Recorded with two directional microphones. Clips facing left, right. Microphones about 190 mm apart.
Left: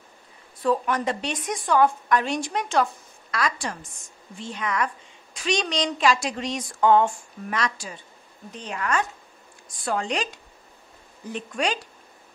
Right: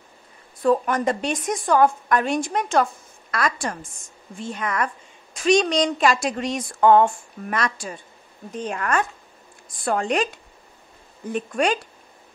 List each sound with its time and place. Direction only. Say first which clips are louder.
0.6 s a woman's voice: right 4 dB; 45° right (ahead or behind)
11.3 s a woman's voice: right 5 dB; 50° right (ahead or behind)